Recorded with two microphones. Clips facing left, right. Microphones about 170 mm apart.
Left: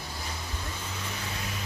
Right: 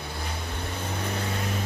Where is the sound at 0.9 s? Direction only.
60° right (ahead or behind).